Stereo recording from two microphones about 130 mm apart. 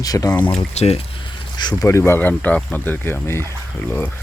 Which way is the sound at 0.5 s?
55° left (ahead or behind).